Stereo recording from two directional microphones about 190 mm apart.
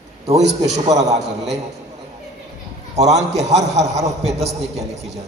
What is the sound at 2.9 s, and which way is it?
Speech, 35° right (ahead or behind).